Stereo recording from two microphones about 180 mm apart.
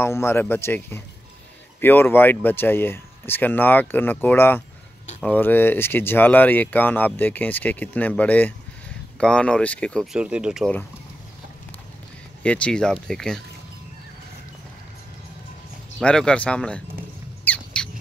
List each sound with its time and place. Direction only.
0.0 s speech: 15° left (ahead or behind)
10.1 s speech: 5° right (ahead or behind)
12.4 s speech: 5° left (ahead or behind)
16.0 s speech: 5° left (ahead or behind)
17.8 s squawk: 5° left (ahead or behind)